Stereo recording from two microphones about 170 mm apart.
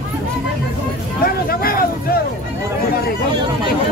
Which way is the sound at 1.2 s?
60° left (ahead or behind).